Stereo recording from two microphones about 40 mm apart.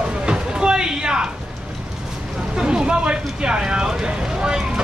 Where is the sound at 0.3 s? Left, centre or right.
Right.